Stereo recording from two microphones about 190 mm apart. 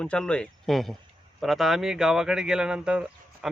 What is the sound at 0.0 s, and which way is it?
Speech, 5° left (ahead or behind).